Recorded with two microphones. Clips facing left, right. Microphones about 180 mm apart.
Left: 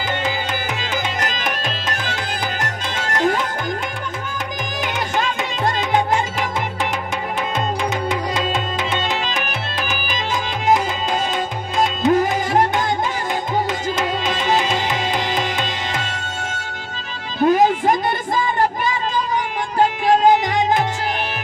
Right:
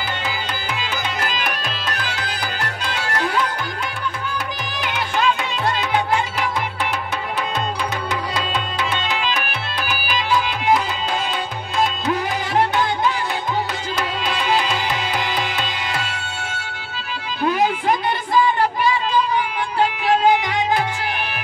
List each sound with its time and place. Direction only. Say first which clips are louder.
2.2 s music: left 2 dB; 45° left (ahead or behind)
4.8 s music: right 2 dB; 45° left (ahead or behind)
9.2 s music: even; 45° left (ahead or behind)
12.1 s music: left 5 dB; 45° left (ahead or behind)
17.4 s music: left 5 dB; 45° left (ahead or behind)